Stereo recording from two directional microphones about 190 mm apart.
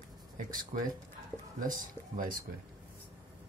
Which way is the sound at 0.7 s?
45° right (ahead or behind).